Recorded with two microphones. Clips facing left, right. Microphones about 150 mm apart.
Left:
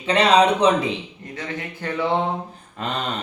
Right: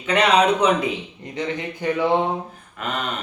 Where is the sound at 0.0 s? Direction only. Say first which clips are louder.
Left 1 dB; 30° left (ahead or behind).